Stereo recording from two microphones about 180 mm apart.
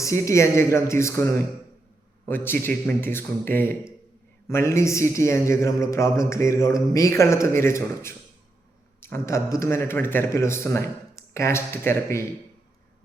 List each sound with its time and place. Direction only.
0.0 s a man's voice: 15° left (ahead or behind)